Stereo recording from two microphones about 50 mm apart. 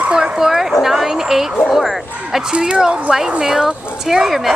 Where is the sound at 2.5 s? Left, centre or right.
Centre.